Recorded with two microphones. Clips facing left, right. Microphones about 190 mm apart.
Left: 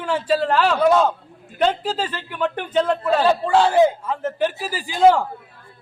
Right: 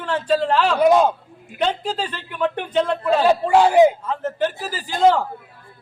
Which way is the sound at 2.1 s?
Centre (ahead or behind).